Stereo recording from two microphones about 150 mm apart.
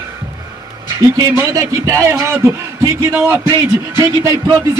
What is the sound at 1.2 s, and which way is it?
A man's voice, 20° right (ahead or behind).